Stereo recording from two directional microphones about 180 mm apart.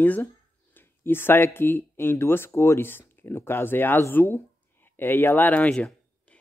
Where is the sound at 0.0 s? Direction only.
10° left (ahead or behind).